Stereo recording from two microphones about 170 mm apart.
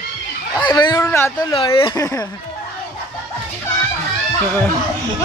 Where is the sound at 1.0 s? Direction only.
15° left (ahead or behind).